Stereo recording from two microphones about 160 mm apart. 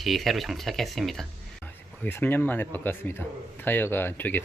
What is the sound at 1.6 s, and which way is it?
Speech, 10° left (ahead or behind).